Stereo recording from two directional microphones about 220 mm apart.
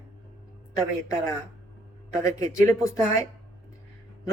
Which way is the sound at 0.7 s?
15° left (ahead or behind).